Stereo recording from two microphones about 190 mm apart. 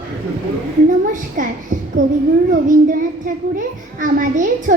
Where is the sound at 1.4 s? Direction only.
45° right (ahead or behind).